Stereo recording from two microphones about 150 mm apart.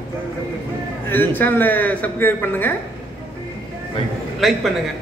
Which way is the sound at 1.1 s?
10° left (ahead or behind).